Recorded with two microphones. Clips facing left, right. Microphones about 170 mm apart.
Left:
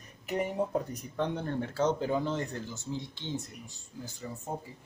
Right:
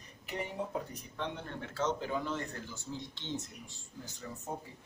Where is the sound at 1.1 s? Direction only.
40° left (ahead or behind).